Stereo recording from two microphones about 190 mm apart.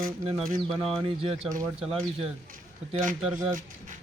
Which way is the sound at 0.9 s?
30° right (ahead or behind).